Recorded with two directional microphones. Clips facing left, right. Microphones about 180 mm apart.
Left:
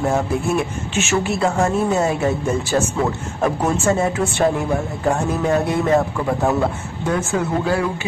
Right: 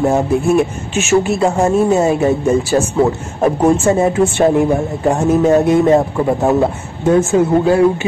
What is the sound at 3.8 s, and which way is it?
A woman's voice, 15° right (ahead or behind).